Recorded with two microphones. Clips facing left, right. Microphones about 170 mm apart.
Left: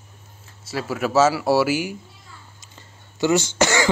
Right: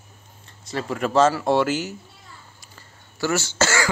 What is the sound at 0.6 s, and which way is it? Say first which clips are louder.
Speech: left 1 dB; 5° left (ahead or behind).